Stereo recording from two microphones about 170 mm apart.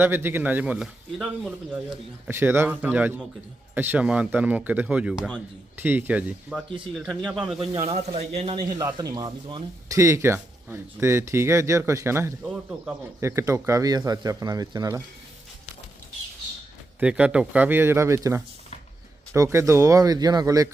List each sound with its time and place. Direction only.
0.0 s speech: 10° right (ahead or behind)
7.8 s speech: 40° right (ahead or behind)
8.1 s speech: 30° right (ahead or behind)
17.0 s speech: 5° right (ahead or behind)